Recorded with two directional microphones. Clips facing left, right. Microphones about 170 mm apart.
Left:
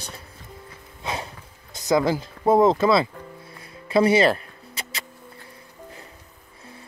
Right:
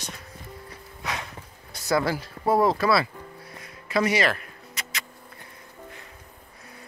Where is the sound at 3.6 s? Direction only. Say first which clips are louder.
Left 5 dB; 30° left (ahead or behind).